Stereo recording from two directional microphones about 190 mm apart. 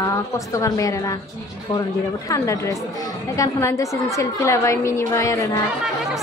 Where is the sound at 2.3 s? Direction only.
15° left (ahead or behind).